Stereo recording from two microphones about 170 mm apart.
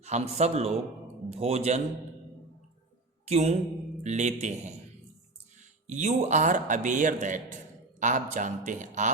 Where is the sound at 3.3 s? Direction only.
40° right (ahead or behind).